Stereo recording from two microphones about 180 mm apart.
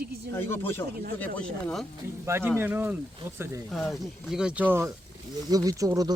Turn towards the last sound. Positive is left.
turn(degrees=-20)  # may be behind; listen again after turning